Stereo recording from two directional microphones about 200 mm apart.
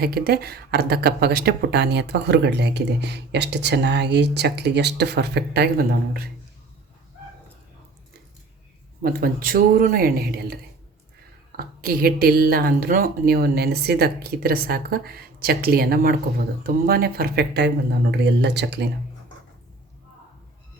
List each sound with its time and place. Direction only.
0.0 s speech: 50° right (ahead or behind)
9.0 s speech: 45° right (ahead or behind)